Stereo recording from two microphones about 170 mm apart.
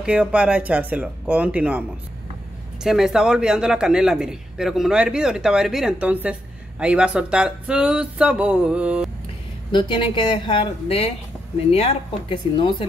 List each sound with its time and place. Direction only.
0.0 s speech: 5° right (ahead or behind)
9.7 s speech: 30° left (ahead or behind)